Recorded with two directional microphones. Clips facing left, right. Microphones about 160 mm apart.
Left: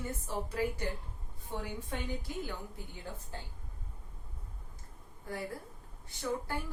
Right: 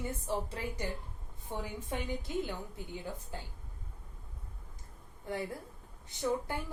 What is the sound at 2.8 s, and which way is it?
Speech, 20° right (ahead or behind).